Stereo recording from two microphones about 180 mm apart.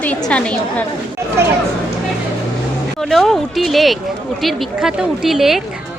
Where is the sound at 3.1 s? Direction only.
Centre (ahead or behind).